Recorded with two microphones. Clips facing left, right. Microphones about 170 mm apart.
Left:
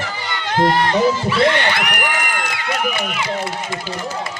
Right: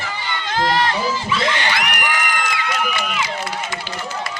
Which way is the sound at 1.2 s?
60° left (ahead or behind).